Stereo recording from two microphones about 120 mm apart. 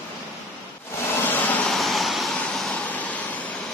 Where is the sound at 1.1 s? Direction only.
20° left (ahead or behind).